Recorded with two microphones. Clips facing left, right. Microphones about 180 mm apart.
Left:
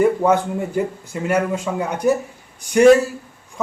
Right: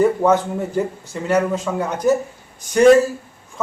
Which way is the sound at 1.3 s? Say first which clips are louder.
Right 2 dB; 10° left (ahead or behind).